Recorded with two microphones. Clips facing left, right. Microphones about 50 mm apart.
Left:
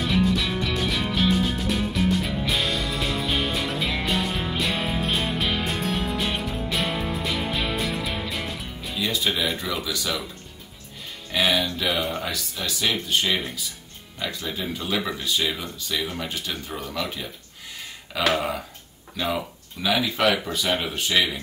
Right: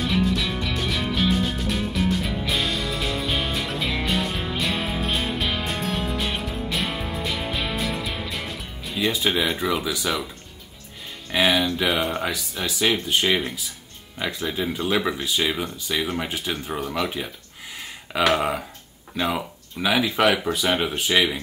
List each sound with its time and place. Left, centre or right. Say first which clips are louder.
0.0 s music: even; centre
8.9 s speech: right 3 dB; right
11.6 s speech: right 3 dB; centre